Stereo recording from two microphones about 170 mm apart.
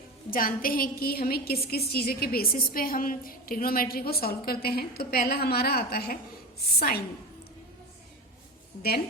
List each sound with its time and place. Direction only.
0.3 s a woman's voice: 55° left (ahead or behind)